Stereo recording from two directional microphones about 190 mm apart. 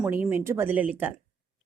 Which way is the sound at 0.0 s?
10° right (ahead or behind).